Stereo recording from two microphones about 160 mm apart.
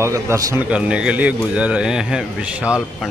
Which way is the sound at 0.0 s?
20° right (ahead or behind).